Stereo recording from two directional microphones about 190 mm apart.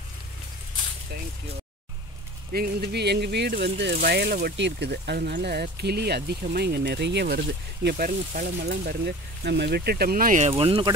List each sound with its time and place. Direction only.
2.5 s speech: 50° right (ahead or behind)
10.5 s speech: 30° right (ahead or behind)